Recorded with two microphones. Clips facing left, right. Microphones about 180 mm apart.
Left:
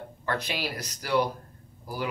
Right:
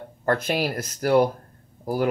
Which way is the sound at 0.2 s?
50° right (ahead or behind).